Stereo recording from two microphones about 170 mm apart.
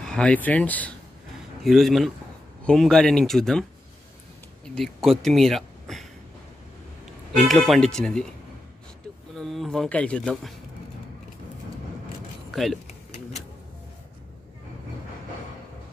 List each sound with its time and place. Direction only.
0.0 s speech: 5° left (ahead or behind)
4.6 s speech: centre (ahead or behind)
7.4 s speech: centre (ahead or behind)
9.4 s speech: centre (ahead or behind)
12.4 s a sound: centre (ahead or behind)
12.8 s a sound: 40° left (ahead or behind)